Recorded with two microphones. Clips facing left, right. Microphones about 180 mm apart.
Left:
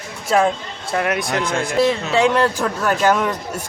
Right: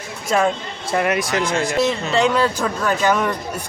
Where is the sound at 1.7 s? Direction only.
5° left (ahead or behind).